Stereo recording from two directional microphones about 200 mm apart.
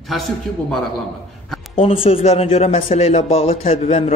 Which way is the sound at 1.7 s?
30° left (ahead or behind).